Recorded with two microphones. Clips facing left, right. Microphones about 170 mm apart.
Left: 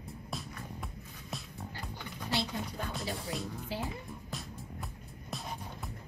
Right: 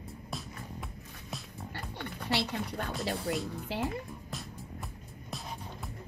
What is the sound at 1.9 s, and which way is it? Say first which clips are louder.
Music: right 3 dB; 70° right (ahead or behind).